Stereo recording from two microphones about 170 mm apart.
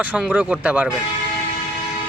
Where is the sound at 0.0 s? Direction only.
10° right (ahead or behind).